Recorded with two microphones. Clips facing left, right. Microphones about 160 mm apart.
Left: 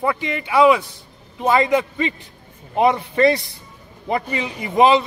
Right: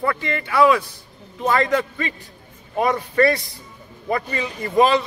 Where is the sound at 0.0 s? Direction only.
15° left (ahead or behind).